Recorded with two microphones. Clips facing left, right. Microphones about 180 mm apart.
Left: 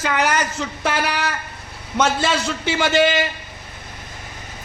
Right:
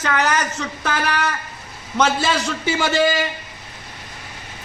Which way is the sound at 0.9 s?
10° left (ahead or behind).